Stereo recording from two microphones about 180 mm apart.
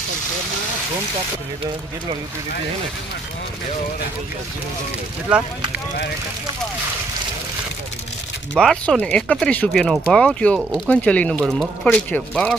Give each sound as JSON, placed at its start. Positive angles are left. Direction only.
{"t": 8.5, "sound": "speech", "side_deg": 5}